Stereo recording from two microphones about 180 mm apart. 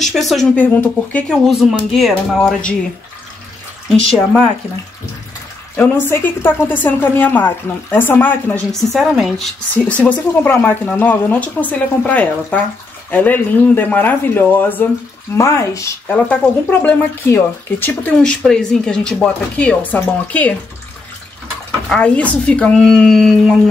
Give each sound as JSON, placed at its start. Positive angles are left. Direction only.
{"t": 0.0, "sound": "a woman's voice", "side_deg": 0}
{"t": 5.8, "sound": "a woman's voice", "side_deg": 10}
{"t": 21.8, "sound": "speech", "side_deg": 5}